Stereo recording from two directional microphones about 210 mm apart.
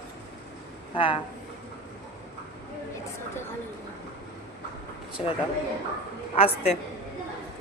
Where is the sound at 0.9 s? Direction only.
25° left (ahead or behind).